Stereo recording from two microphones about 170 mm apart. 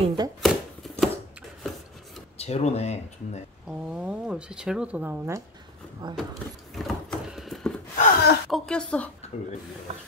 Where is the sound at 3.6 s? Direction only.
5° right (ahead or behind).